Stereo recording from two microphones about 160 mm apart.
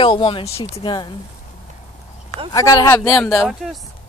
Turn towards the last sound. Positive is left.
turn(degrees=-5)  # may be behind; listen again after turning